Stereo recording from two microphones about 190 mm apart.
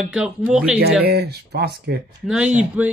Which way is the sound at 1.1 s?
60° right (ahead or behind).